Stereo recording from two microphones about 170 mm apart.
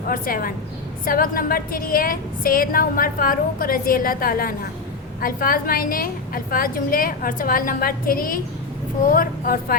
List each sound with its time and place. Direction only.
0.1 s a woman's voice: 55° left (ahead or behind)